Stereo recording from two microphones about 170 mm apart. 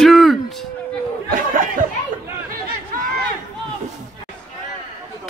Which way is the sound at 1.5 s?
50° right (ahead or behind).